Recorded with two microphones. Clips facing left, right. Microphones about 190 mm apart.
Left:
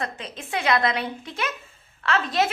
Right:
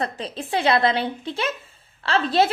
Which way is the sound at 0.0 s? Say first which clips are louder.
Right 5 dB; 35° right (ahead or behind).